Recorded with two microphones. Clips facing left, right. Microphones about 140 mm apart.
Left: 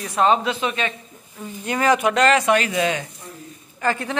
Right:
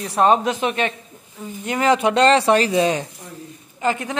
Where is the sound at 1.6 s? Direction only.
20° right (ahead or behind).